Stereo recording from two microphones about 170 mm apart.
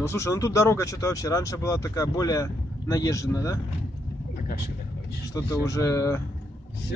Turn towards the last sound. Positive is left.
turn(degrees=20)  # may be behind; listen again after turning